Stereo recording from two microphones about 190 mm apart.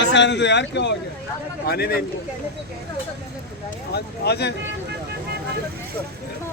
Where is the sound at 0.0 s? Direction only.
70° left (ahead or behind).